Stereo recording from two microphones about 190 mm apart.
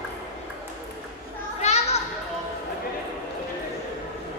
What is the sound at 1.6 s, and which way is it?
Children playing, 35° left (ahead or behind).